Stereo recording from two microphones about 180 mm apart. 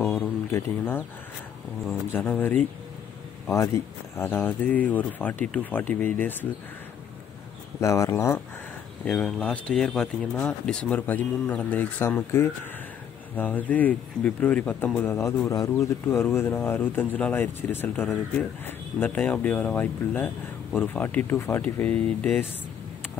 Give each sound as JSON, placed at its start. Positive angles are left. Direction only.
{"t": 0.0, "sound": "a sound", "side_deg": 15}
{"t": 2.1, "sound": "speech", "side_deg": 10}
{"t": 7.8, "sound": "speech", "side_deg": 15}